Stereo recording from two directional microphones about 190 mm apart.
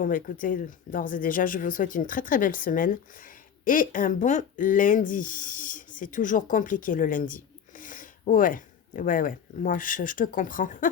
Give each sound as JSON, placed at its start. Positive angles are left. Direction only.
{"t": 0.0, "sound": "speech", "side_deg": 45}